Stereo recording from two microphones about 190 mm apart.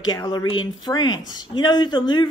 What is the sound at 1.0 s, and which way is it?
Speech, 90° left.